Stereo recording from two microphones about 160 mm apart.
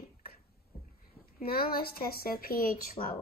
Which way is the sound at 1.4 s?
70° left (ahead or behind).